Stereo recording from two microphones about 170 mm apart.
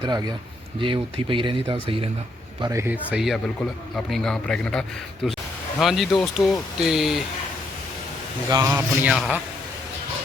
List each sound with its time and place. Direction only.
0.0 s speech: 25° right (ahead or behind)
2.6 s a man's voice: 20° right (ahead or behind); by 7.3 s centre (ahead or behind)
8.4 s speech: 20° right (ahead or behind)